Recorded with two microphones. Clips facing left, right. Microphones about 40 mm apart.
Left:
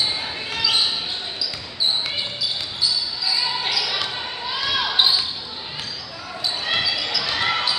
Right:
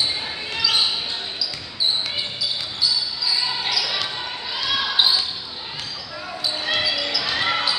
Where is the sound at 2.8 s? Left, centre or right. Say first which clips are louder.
Right 1 dB; centre.